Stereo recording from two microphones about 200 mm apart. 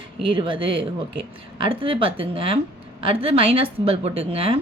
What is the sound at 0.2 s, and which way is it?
A woman's voice, 25° right (ahead or behind).